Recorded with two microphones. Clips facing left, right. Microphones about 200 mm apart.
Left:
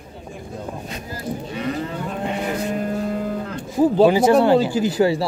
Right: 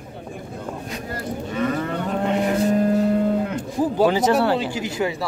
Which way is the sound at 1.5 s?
50° right (ahead or behind).